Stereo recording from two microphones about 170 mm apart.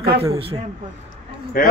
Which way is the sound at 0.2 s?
35° right (ahead or behind).